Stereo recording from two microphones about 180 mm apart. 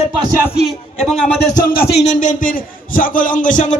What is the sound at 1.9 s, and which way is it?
Music, 40° left (ahead or behind).